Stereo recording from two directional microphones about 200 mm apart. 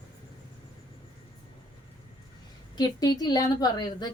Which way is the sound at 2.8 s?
20° left (ahead or behind).